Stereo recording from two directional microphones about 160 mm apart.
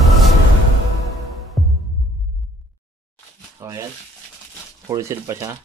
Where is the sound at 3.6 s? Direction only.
20° right (ahead or behind).